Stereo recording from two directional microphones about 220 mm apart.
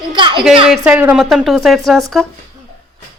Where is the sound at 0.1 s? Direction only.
20° right (ahead or behind).